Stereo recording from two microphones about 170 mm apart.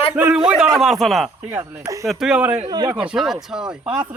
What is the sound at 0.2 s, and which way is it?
Speech, 5° right (ahead or behind).